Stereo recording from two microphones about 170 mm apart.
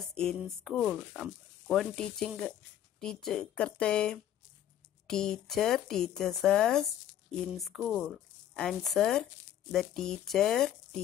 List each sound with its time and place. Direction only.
0.0 s speech: 5° left (ahead or behind)